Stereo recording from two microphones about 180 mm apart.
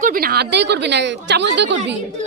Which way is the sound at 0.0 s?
55° right (ahead or behind).